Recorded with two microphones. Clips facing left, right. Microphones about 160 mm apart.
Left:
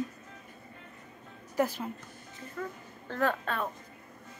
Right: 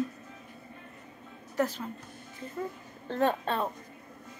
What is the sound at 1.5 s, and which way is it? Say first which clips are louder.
Speech: left 1 dB; 10° left (ahead or behind).